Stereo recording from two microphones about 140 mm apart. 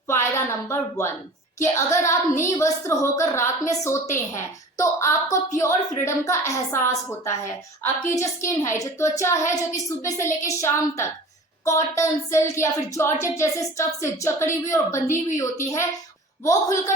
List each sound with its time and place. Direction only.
0.1 s a woman's voice: 20° left (ahead or behind)